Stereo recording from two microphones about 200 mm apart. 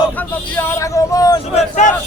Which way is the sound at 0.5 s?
15° left (ahead or behind).